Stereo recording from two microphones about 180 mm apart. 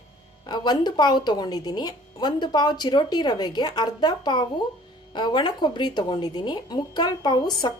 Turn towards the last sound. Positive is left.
turn(degrees=25)  # may be behind; listen again after turning